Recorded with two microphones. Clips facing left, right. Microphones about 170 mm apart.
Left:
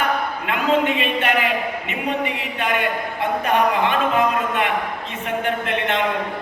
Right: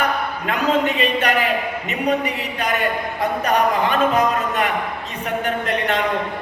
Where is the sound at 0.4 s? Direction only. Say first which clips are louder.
Even; 40° right (ahead or behind).